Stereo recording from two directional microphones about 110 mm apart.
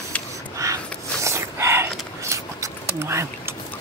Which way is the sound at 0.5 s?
30° right (ahead or behind).